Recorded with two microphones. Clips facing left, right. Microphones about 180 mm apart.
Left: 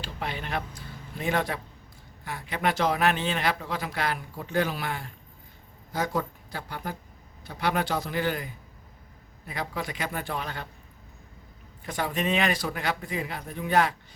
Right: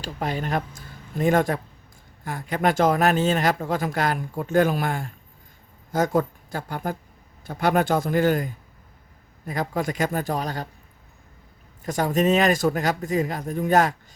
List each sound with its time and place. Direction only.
0.0 s speech: 45° right (ahead or behind)
11.9 s speech: 40° right (ahead or behind)